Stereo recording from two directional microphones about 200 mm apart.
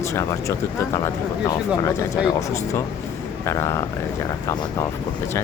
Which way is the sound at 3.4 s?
15° left (ahead or behind).